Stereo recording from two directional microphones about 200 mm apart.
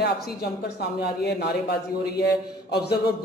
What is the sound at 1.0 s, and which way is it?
Speech, 55° left (ahead or behind).